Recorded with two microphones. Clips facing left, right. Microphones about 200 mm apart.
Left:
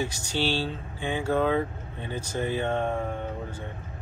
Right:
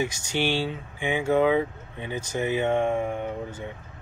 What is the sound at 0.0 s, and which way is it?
Speech, 15° right (ahead or behind).